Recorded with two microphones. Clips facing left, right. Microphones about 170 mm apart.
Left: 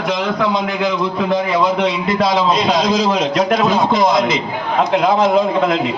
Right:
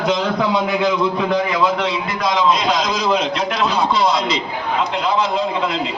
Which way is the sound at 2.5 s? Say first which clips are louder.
Left 3 dB; 40° left (ahead or behind).